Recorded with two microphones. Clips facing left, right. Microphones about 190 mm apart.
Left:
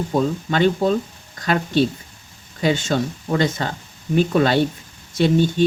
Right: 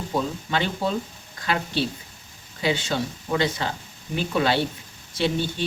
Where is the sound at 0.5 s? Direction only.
45° left (ahead or behind).